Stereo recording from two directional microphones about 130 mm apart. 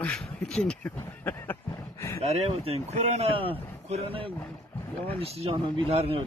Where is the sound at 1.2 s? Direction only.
15° left (ahead or behind).